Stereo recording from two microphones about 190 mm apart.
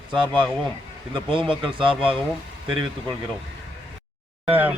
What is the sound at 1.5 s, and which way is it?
Speech, 25° right (ahead or behind).